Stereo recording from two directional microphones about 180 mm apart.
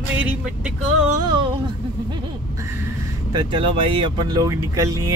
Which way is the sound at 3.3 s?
25° right (ahead or behind).